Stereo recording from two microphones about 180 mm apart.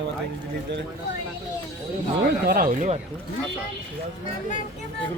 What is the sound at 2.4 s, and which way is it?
Speech, 55° right (ahead or behind).